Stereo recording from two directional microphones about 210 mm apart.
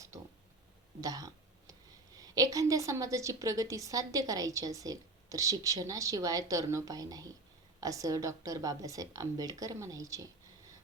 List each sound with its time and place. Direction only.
1.0 s throat clearing: 15° right (ahead or behind)
2.1 s a woman's voice: 15° right (ahead or behind)